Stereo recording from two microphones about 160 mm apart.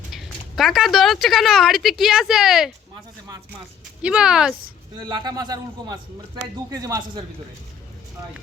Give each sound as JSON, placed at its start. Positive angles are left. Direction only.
{"t": 0.1, "sound": "speech", "side_deg": 0}
{"t": 4.0, "sound": "speech", "side_deg": -5}
{"t": 5.0, "sound": "a man's voice", "side_deg": -25}